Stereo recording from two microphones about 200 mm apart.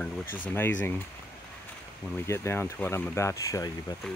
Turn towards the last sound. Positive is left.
turn(degrees=15)  # may be behind; listen again after turning